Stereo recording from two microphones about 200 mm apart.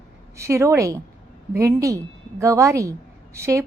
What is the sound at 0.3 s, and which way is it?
A woman's voice, 15° right (ahead or behind).